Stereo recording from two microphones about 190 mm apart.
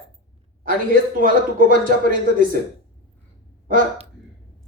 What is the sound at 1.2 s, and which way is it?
A woman's voice, 45° right (ahead or behind).